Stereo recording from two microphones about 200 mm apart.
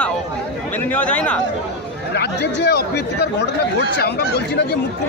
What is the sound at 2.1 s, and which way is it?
Speech, 55° left (ahead or behind).